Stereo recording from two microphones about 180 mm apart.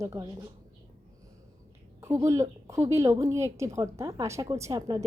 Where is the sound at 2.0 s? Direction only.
15° right (ahead or behind).